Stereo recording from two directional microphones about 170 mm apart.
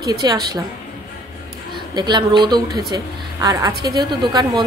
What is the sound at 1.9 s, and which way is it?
A woman's voice, 25° right (ahead or behind).